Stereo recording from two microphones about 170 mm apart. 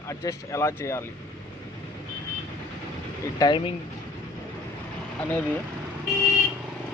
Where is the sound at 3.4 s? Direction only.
20° left (ahead or behind).